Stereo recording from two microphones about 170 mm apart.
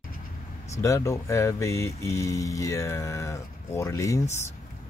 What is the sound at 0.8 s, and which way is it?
Speech, 20° left (ahead or behind).